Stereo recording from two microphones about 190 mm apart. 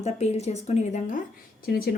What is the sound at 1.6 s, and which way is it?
Speech, 50° left (ahead or behind).